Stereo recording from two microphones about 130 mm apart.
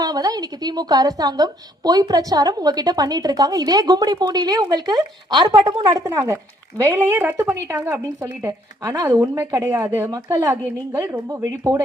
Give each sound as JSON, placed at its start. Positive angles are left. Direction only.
{"t": 0.0, "sound": "a woman's voice", "side_deg": -30}
{"t": 10.1, "sound": "a woman's voice", "side_deg": -30}